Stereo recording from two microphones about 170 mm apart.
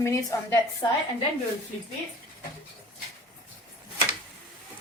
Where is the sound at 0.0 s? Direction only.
15° left (ahead or behind).